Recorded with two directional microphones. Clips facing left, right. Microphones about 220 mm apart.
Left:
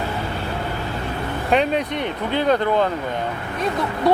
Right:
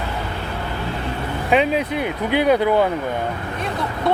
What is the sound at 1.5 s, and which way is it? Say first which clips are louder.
Speech: right 1 dB; 5° right (ahead or behind).